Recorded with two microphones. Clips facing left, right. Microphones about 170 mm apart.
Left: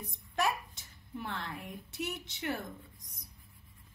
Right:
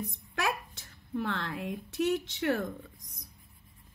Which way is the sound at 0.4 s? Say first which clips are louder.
Even; 90° right.